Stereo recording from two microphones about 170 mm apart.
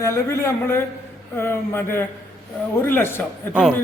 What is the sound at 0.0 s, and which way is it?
A man's voice, 15° left (ahead or behind).